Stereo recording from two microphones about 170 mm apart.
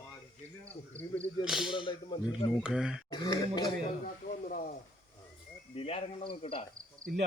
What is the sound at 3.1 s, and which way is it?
Speech, 25° left (ahead or behind).